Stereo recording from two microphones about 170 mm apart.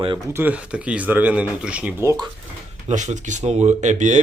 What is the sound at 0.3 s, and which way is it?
Speech, 10° right (ahead or behind).